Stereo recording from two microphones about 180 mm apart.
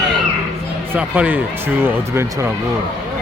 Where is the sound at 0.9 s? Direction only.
5° right (ahead or behind).